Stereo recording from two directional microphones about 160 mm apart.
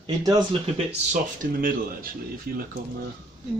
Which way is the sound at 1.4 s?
60° right (ahead or behind).